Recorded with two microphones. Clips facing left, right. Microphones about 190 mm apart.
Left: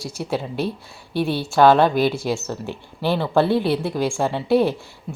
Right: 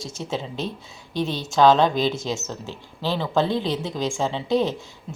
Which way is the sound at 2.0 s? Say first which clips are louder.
Left 4 dB; 20° right (ahead or behind).